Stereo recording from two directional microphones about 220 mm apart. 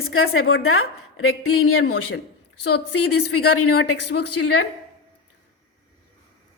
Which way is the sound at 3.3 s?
90° left.